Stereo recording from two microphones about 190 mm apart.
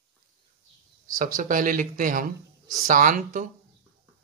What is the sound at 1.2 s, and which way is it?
Speech, 45° right (ahead or behind).